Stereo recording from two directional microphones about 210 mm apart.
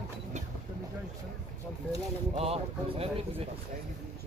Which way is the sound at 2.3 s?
30° right (ahead or behind).